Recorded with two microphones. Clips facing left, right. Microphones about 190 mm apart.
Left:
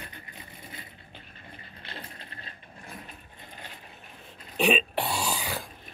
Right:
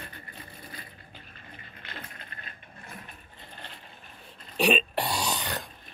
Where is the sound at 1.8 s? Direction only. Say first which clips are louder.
Left 1 dB; 30° left (ahead or behind).